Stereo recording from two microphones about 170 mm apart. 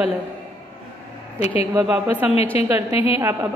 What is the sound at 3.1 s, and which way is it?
Speech, 15° right (ahead or behind).